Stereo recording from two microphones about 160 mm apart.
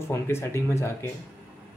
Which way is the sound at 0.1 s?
15° left (ahead or behind).